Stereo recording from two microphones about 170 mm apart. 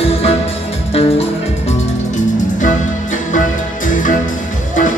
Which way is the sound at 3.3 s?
50° left (ahead or behind).